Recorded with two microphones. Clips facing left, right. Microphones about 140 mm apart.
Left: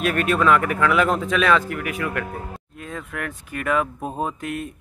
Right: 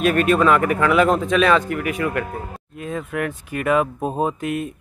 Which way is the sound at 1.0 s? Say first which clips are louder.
Right 4 dB; 20° right (ahead or behind).